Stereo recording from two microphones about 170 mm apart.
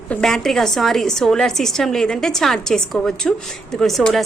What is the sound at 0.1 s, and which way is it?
A woman's voice, 5° left (ahead or behind).